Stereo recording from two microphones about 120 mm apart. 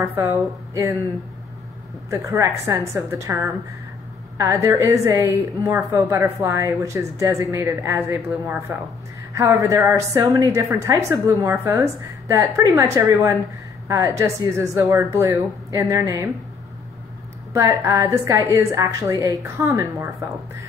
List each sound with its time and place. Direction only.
0.0 s a woman's voice: 25° right (ahead or behind)
2.0 s a woman's voice: 25° right (ahead or behind)
17.5 s a woman's voice: 25° right (ahead or behind)